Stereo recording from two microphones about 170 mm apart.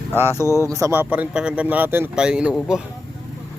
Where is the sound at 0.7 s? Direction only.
15° right (ahead or behind).